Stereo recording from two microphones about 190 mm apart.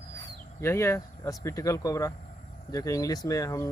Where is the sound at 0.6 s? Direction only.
15° left (ahead or behind).